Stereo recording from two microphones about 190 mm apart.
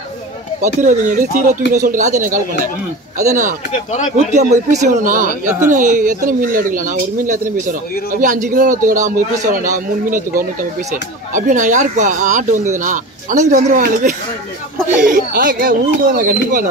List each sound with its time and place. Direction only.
0.6 s speech: 40° right (ahead or behind)
3.7 s speech: 40° left (ahead or behind)
4.4 s a man's voice: 40° right (ahead or behind)